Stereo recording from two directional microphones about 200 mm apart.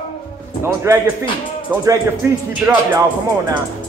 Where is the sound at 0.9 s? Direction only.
15° right (ahead or behind).